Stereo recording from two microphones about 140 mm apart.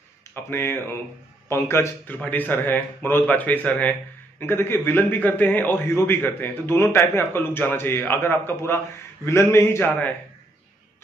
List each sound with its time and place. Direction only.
0.3 s a man's voice: 15° left (ahead or behind)